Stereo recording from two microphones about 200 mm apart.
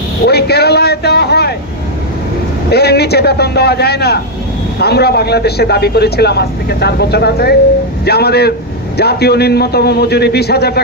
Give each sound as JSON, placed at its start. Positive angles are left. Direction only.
{"t": 0.2, "sound": "vehicle", "side_deg": 55}
{"t": 2.7, "sound": "a man's voice", "side_deg": 55}